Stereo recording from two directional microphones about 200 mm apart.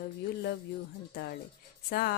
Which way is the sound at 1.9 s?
50° left (ahead or behind).